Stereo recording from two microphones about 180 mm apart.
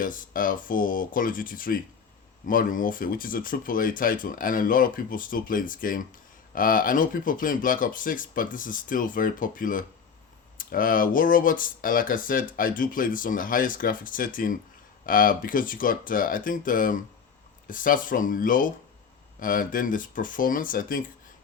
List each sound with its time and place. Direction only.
0.0 s speech: 50° left (ahead or behind)